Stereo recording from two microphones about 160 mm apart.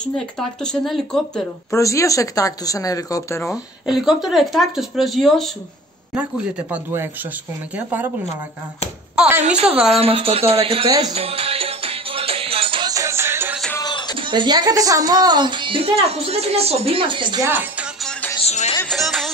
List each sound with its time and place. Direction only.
0.0 s speech: 5° left (ahead or behind)
1.7 s speech: 20° left (ahead or behind)
3.5 s speech: centre (ahead or behind)
6.7 s speech: 15° right (ahead or behind)
9.1 s speech: 5° right (ahead or behind)
9.8 s music: 40° right (ahead or behind)
12.9 s music: 15° right (ahead or behind)
13.7 s music: 25° left (ahead or behind)
14.1 s speech: 30° right (ahead or behind)
17.4 s speech: 10° right (ahead or behind)
18.4 s music: 40° left (ahead or behind)
18.9 s music: centre (ahead or behind)